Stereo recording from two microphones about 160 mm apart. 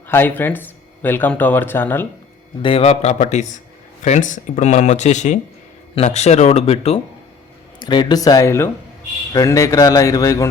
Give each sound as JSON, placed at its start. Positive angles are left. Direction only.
{"t": 0.1, "sound": "speech", "side_deg": 15}
{"t": 2.6, "sound": "a man's voice", "side_deg": 35}
{"t": 7.8, "sound": "speech", "side_deg": 30}